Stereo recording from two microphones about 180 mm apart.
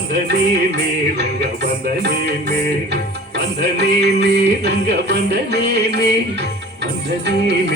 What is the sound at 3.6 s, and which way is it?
Music, 70° right (ahead or behind).